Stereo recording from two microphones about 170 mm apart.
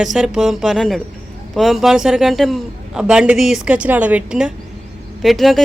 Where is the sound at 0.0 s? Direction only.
5° right (ahead or behind).